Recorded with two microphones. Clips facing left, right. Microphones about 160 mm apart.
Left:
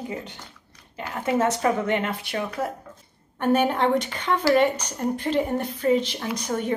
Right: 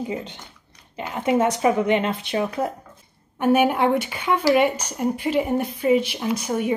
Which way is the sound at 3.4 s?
10° right (ahead or behind).